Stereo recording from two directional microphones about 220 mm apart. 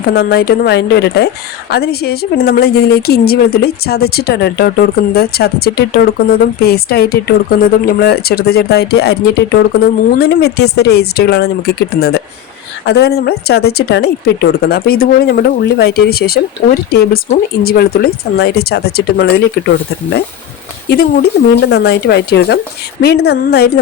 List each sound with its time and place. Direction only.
0.1 s speech: 45° left (ahead or behind)
20.9 s speech: 45° left (ahead or behind)